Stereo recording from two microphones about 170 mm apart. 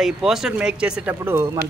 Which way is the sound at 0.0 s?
Centre (ahead or behind).